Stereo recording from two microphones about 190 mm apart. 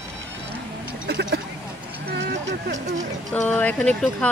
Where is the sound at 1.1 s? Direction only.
60° right (ahead or behind).